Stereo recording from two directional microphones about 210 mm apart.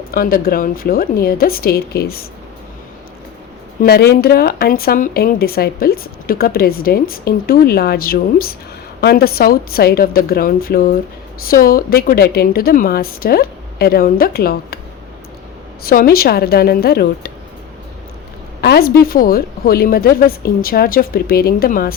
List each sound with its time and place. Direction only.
0.1 s speech: 45° left (ahead or behind)
3.8 s speech: 50° left (ahead or behind)
15.8 s speech: 45° left (ahead or behind)
18.6 s speech: 50° left (ahead or behind)